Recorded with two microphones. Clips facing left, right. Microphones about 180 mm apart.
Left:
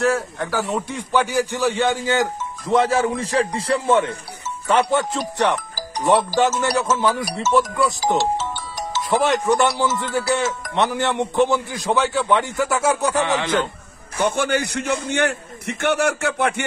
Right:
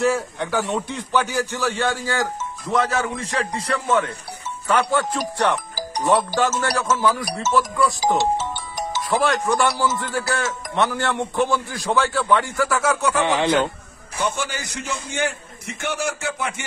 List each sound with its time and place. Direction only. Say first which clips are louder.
0.0 s a man's voice: even; centre (ahead or behind); by 7.2 s 25° left (ahead or behind)
9.1 s a man's voice: left 2 dB; 20° left (ahead or behind)
13.2 s speech: right 1 dB; 20° right (ahead or behind)
14.2 s a man's voice: left 6 dB; 60° left (ahead or behind)